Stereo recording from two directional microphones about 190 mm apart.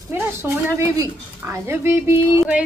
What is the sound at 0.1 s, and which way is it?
A woman's voice, 10° right (ahead or behind).